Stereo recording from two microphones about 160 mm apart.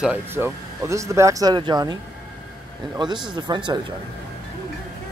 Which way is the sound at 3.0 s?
30° right (ahead or behind).